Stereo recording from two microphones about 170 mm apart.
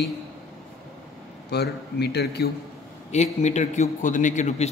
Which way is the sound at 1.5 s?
75° left (ahead or behind).